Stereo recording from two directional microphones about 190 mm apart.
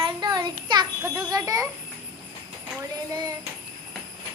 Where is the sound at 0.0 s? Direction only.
25° right (ahead or behind).